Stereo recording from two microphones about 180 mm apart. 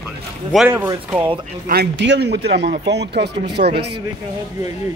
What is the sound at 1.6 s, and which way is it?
Speech, 60° right (ahead or behind).